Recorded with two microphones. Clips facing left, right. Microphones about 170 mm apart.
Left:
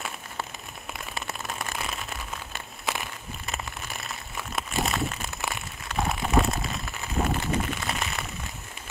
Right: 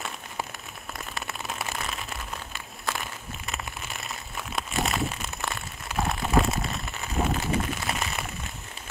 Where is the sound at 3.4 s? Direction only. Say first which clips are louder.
Left 1 dB; centre (ahead or behind).